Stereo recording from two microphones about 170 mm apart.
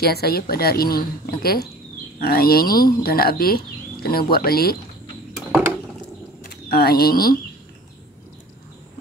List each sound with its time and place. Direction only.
0.0 s a woman's voice: 65° left (ahead or behind)
6.5 s speech: 65° left (ahead or behind)